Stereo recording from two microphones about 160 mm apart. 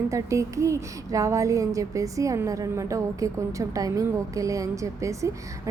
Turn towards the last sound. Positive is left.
turn(degrees=-20)  # may be behind; listen again after turning